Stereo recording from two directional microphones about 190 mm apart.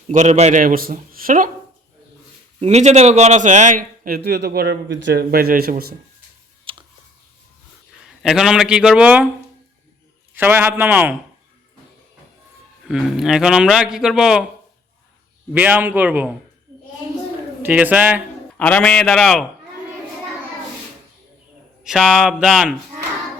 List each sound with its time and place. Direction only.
0.1 s a man's voice: 35° right (ahead or behind)
2.6 s a man's voice: 35° right (ahead or behind); by 5.9 s 55° right (ahead or behind)
6.7 s a sound: 25° right (ahead or behind)
8.2 s a man's voice: centre (ahead or behind)
10.3 s a man's voice: 10° right (ahead or behind)
12.8 s a man's voice: 5° right (ahead or behind)
15.5 s a man's voice: 10° right (ahead or behind)
17.6 s a man's voice: 10° right (ahead or behind)
18.5 s a man's voice: 5° left (ahead or behind)
21.8 s a man's voice: centre (ahead or behind)